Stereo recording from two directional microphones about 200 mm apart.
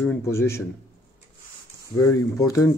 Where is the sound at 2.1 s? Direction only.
15° left (ahead or behind).